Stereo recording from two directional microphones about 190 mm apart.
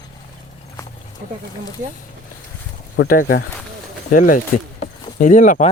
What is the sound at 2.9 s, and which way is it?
Speech, 50° left (ahead or behind).